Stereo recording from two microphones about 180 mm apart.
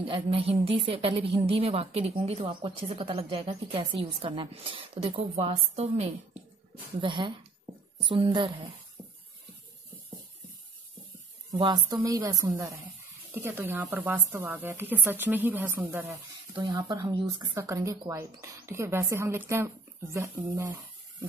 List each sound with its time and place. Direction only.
0.0 s a woman's voice: 30° right (ahead or behind)
11.5 s a woman's voice: 20° right (ahead or behind)
16.5 s a woman's voice: 20° right (ahead or behind)